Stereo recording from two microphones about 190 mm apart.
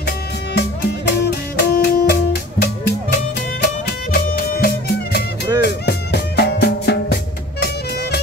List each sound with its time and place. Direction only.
0.6 s music: 60° left (ahead or behind)